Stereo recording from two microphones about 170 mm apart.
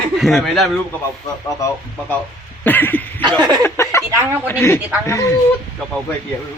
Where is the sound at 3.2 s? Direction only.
25° right (ahead or behind).